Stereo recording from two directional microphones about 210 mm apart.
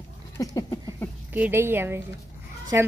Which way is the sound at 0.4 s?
15° left (ahead or behind).